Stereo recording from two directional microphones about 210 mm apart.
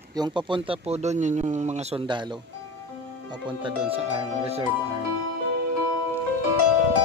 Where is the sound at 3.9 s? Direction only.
30° right (ahead or behind).